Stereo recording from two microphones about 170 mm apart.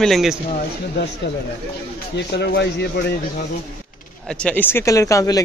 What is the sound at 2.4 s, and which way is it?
Speech, 80° left.